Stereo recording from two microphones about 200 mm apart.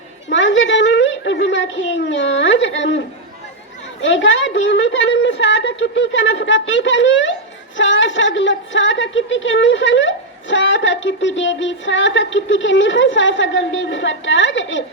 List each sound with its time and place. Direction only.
0.3 s a woman's voice: 70° left (ahead or behind)
4.0 s a woman's voice: 70° left (ahead or behind)